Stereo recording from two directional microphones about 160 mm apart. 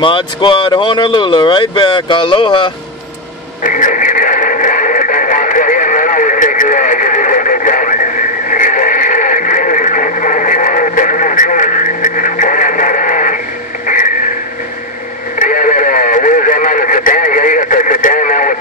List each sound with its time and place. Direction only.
0.0 s speech: 30° left (ahead or behind)
3.6 s radio: 55° left (ahead or behind)
13.8 s a sound: 55° left (ahead or behind)
15.3 s radio: 55° left (ahead or behind)